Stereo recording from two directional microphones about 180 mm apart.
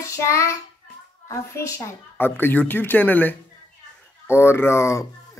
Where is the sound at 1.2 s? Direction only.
15° left (ahead or behind).